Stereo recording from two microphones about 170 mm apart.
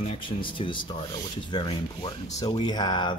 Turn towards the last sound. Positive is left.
turn(degrees=25)  # may be behind; listen again after turning